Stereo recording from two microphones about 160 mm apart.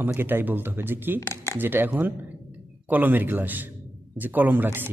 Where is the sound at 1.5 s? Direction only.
10° right (ahead or behind).